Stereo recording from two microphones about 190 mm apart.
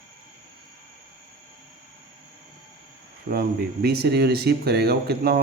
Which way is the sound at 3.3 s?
55° right (ahead or behind).